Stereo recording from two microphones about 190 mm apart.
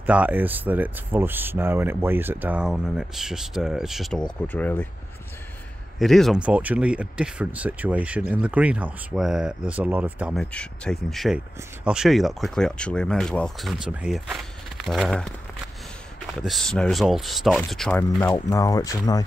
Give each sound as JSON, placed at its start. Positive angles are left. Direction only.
{"t": 0.0, "sound": "speech", "side_deg": -10}
{"t": 4.5, "sound": "speech", "side_deg": 10}
{"t": 5.9, "sound": "speech", "side_deg": 0}
{"t": 10.4, "sound": "speech", "side_deg": 5}
{"t": 16.3, "sound": "speech", "side_deg": 0}
{"t": 18.1, "sound": "speech", "side_deg": 15}